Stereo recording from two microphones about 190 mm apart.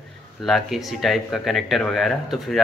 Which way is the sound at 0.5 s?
Centre (ahead or behind).